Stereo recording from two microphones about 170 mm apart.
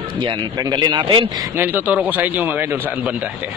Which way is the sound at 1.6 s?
10° right (ahead or behind).